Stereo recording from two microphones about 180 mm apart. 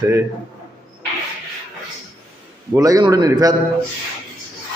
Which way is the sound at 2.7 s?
20° right (ahead or behind).